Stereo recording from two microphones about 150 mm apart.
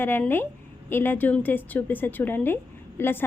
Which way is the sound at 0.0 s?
15° left (ahead or behind).